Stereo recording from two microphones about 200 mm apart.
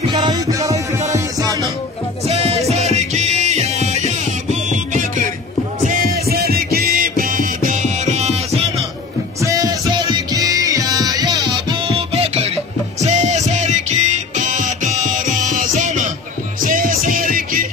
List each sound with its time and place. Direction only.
0.1 s music: 20° right (ahead or behind)
2.2 s music: 30° right (ahead or behind)
9.4 s music: 15° right (ahead or behind); by 17.6 s 45° right (ahead or behind)